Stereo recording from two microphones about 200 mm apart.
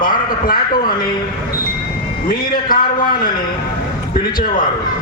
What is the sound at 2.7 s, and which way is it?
Speech, 45° left (ahead or behind).